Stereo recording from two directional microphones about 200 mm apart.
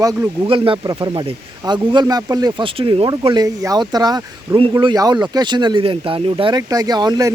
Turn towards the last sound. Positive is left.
turn(degrees=-20)  # may be behind; listen again after turning